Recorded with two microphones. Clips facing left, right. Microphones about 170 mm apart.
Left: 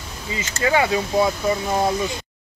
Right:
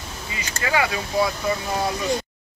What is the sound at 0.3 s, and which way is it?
Speech, 25° left (ahead or behind).